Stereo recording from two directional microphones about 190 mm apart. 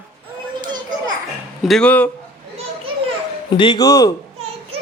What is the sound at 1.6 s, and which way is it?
Speech, centre (ahead or behind).